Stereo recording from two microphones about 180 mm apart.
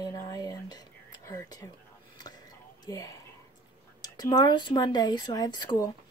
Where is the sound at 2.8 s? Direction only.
20° left (ahead or behind).